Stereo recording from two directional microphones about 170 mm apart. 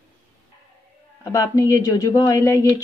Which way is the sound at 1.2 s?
20° left (ahead or behind).